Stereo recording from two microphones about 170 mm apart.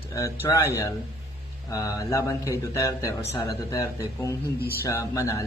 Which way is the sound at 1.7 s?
20° left (ahead or behind).